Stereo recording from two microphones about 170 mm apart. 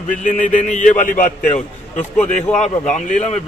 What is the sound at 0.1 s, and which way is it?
A man's voice, 50° left (ahead or behind).